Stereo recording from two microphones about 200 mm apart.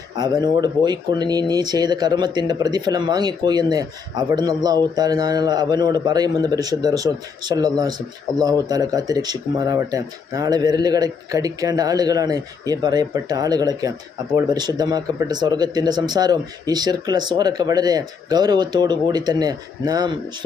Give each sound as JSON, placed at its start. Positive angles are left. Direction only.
{"t": 0.2, "sound": "speech", "side_deg": -20}